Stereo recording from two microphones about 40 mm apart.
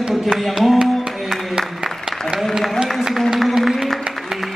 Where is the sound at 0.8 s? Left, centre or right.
Centre.